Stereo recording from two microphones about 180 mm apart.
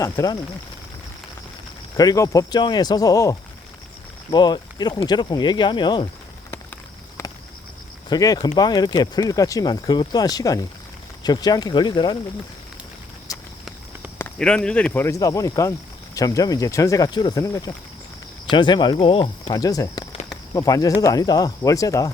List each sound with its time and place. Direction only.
0.0 s speech: 20° left (ahead or behind)
2.0 s speech: 20° left (ahead or behind)
7.2 s a sound: 15° left (ahead or behind)
8.1 s speech: 20° left (ahead or behind)
14.2 s speech: 10° left (ahead or behind)